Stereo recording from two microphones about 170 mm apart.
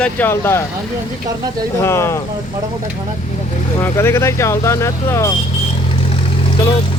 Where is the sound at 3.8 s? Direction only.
15° left (ahead or behind).